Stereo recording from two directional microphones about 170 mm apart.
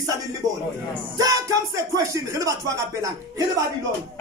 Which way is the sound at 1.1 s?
20° right (ahead or behind).